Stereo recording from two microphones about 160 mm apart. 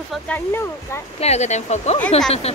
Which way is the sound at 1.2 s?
45° left (ahead or behind).